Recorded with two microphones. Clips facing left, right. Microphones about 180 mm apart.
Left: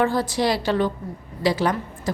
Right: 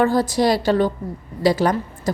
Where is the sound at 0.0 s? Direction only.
40° right (ahead or behind).